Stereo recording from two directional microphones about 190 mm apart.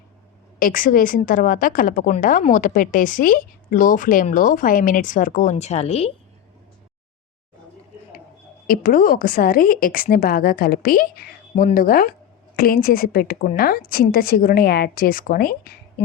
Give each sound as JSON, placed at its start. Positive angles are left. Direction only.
{"t": 0.6, "sound": "speech", "side_deg": 45}
{"t": 8.6, "sound": "speech", "side_deg": 50}